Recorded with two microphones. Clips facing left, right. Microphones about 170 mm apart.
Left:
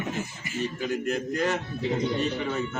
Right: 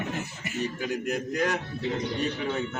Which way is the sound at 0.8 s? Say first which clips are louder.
Left 4 dB; 10° right (ahead or behind).